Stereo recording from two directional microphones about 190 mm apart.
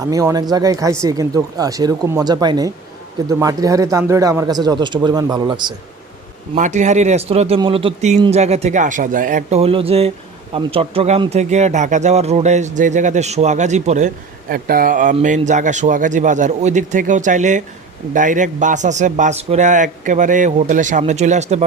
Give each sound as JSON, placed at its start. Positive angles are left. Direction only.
{"t": 0.0, "sound": "speech", "side_deg": -15}
{"t": 6.5, "sound": "speech", "side_deg": -40}
{"t": 14.5, "sound": "speech", "side_deg": -50}